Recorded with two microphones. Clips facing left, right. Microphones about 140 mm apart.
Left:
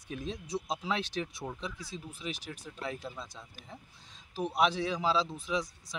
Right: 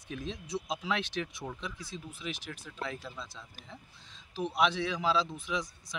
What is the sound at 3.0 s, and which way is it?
Speech, 15° left (ahead or behind).